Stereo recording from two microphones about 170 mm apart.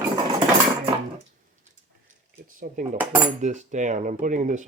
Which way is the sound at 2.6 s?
45° right (ahead or behind).